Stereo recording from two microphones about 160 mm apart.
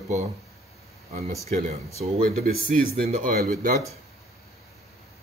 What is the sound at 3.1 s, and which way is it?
Speech, 55° right (ahead or behind).